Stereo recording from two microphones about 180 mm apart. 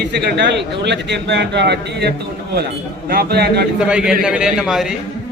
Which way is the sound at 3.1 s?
60° right (ahead or behind).